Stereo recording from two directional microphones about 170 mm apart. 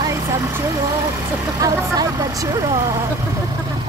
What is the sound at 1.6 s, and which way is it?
Speech, 20° right (ahead or behind).